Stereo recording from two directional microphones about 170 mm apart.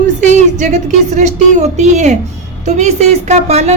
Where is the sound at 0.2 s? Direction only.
45° right (ahead or behind).